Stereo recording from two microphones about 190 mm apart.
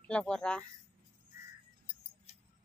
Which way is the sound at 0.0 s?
5° left (ahead or behind).